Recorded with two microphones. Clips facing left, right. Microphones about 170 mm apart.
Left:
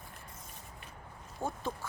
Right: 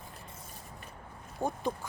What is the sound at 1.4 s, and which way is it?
Speech, 15° right (ahead or behind).